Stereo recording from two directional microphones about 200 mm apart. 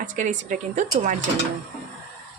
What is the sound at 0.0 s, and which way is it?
Speech, 40° right (ahead or behind).